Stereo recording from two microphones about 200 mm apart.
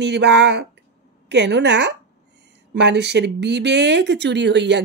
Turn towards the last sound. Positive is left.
turn(degrees=-60)  # may be behind; listen again after turning